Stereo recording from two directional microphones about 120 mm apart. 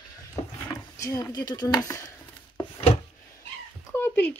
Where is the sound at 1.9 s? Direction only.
25° left (ahead or behind).